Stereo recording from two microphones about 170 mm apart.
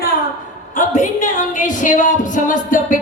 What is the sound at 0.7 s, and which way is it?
A woman's voice, 50° left (ahead or behind).